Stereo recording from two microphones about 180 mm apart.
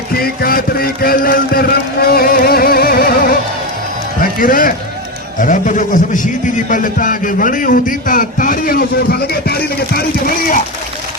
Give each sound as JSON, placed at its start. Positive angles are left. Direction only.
{"t": 0.1, "sound": "music", "side_deg": 55}
{"t": 5.4, "sound": "a man's voice", "side_deg": 45}